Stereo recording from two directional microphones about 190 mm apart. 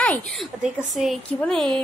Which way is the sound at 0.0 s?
5° left (ahead or behind).